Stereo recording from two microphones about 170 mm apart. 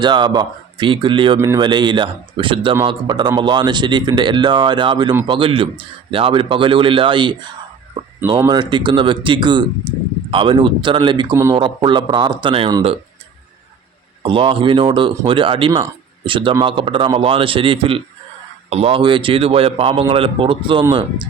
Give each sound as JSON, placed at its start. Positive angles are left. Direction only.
{"t": 0.0, "sound": "speech", "side_deg": -25}
{"t": 8.4, "sound": "speech", "side_deg": -25}
{"t": 14.2, "sound": "speech", "side_deg": -30}